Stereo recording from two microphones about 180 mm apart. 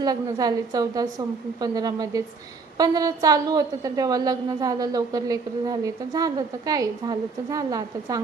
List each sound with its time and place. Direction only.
0.0 s a woman's voice: 20° right (ahead or behind)